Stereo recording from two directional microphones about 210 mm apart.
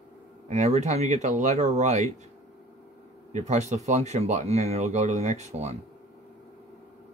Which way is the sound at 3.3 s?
35° right (ahead or behind).